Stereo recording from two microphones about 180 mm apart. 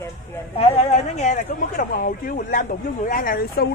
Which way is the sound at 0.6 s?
35° left (ahead or behind).